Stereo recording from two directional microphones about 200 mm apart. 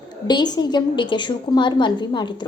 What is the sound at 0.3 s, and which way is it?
A woman's voice, 20° left (ahead or behind).